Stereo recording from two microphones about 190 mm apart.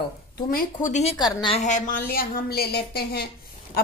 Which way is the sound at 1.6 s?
40° left (ahead or behind).